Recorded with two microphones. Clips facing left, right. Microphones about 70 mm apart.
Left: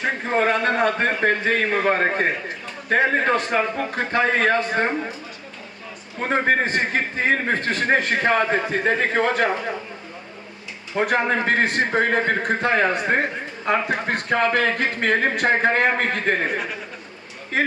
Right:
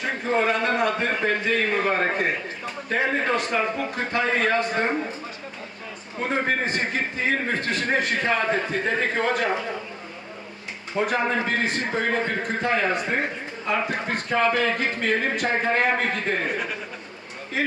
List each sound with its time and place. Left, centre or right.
0.0 s a man's voice: left
6.2 s a man's voice: left
10.9 s a man's voice: left
11.3 s a man's voice: left
16.5 s speech: centre